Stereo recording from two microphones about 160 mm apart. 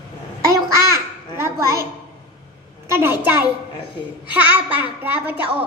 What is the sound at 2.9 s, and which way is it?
A woman's voice, 15° right (ahead or behind).